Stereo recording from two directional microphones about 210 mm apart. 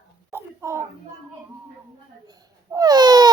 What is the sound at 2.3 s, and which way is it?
Babbling, 20° right (ahead or behind).